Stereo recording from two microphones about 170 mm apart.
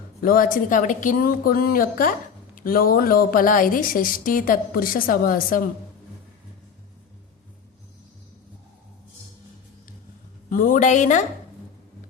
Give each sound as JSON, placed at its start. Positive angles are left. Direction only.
{"t": 0.2, "sound": "a woman's voice", "side_deg": 55}
{"t": 10.5, "sound": "a woman's voice", "side_deg": 50}